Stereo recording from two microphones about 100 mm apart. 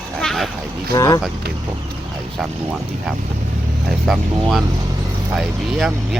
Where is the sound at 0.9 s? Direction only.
35° left (ahead or behind).